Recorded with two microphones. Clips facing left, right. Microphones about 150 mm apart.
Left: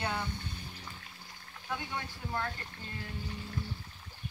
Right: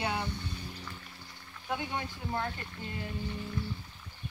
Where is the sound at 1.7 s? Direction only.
20° right (ahead or behind).